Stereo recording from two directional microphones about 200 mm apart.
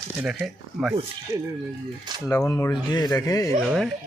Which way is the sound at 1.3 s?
15° right (ahead or behind).